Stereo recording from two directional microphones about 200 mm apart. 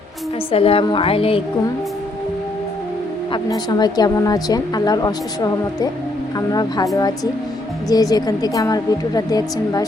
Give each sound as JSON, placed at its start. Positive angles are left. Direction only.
{"t": 0.5, "sound": "a woman's voice", "side_deg": 30}
{"t": 3.3, "sound": "a woman's voice", "side_deg": 20}